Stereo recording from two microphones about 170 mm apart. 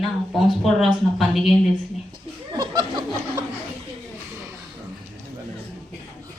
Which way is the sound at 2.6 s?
25° right (ahead or behind).